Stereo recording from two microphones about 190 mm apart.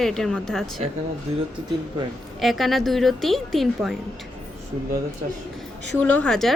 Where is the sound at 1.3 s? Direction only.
30° right (ahead or behind).